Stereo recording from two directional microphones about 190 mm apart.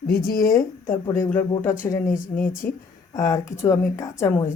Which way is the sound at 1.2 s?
10° left (ahead or behind).